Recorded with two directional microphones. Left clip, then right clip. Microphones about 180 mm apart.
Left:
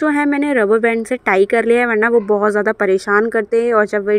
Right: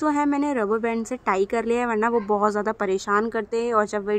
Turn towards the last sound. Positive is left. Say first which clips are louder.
# left 8 dB
turn(degrees=15)  # may be behind; listen again after turning